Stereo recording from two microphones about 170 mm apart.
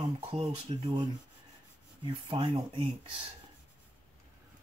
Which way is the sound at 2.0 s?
30° right (ahead or behind).